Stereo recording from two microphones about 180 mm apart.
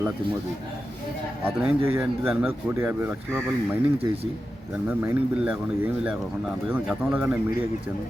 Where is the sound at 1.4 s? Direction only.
10° right (ahead or behind).